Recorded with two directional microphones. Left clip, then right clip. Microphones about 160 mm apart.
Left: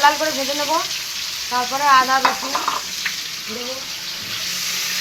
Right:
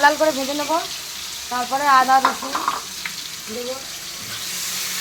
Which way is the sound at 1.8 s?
60° right (ahead or behind).